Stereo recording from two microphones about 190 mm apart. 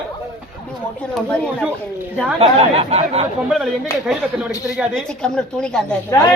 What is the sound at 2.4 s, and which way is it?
Speech, 30° right (ahead or behind).